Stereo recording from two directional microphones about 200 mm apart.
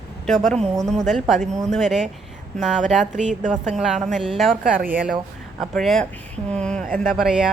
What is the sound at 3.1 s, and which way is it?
Speech, 35° right (ahead or behind).